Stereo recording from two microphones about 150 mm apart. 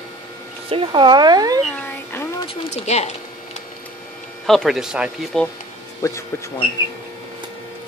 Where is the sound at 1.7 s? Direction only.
15° left (ahead or behind).